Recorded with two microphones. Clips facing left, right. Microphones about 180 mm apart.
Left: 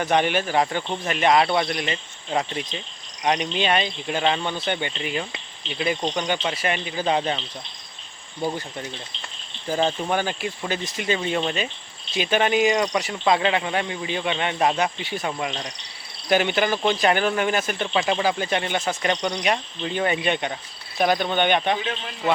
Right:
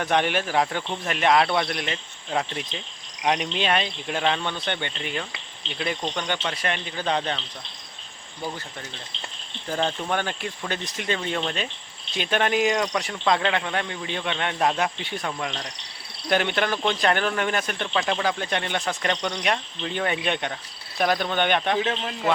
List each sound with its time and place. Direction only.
0.0 s a man's voice: centre (ahead or behind)
8.4 s speech: 15° left (ahead or behind)
9.6 s a man's voice: 5° left (ahead or behind)